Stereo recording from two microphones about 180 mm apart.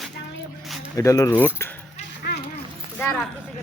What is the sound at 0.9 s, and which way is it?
Speech, 20° left (ahead or behind).